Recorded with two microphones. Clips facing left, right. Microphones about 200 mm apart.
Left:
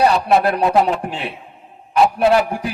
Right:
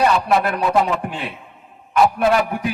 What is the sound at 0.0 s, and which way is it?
A man's voice, 35° left (ahead or behind).